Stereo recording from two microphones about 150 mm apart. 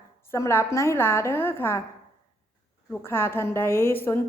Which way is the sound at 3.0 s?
15° left (ahead or behind).